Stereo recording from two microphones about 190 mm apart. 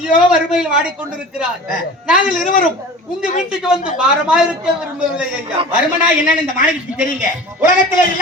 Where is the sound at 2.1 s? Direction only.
45° left (ahead or behind).